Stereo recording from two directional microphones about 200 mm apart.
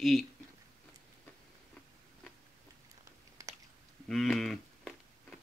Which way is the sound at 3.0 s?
15° right (ahead or behind).